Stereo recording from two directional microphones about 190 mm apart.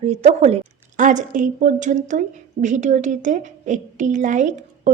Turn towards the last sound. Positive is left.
turn(degrees=-40)  # may be behind; listen again after turning